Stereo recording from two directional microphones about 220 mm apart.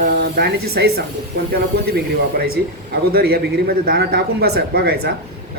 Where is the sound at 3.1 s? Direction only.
45° right (ahead or behind).